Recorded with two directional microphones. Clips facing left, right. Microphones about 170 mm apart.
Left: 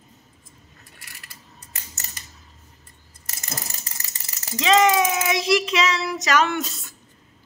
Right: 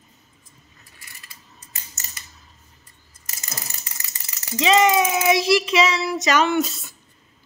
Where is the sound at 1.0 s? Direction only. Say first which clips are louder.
Even; 65° left (ahead or behind).